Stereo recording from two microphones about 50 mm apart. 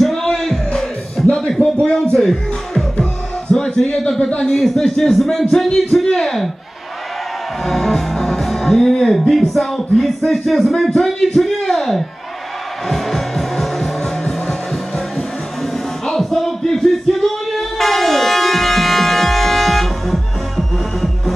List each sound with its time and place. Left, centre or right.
0.0 s music: centre
1.2 s a sound: centre
1.6 s music: left
3.5 s a sound: centre
4.4 s speech: centre
7.6 s music: centre
9.3 s speech: centre
10.9 s a sound: centre
12.8 s music: centre
15.6 s music: centre